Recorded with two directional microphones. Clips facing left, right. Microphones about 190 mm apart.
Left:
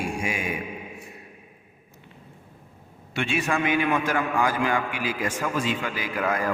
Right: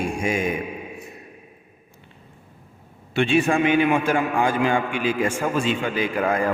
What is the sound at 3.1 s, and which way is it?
A man's voice, 30° right (ahead or behind).